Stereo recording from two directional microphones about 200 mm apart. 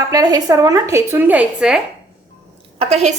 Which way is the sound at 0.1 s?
20° right (ahead or behind).